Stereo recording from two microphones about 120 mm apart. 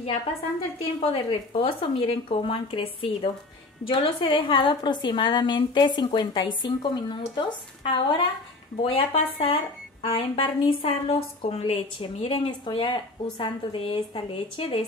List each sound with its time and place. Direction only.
1.0 s a woman's voice: 50° left (ahead or behind)